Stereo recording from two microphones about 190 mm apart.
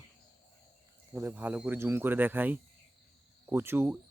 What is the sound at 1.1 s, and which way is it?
Speech, 10° right (ahead or behind).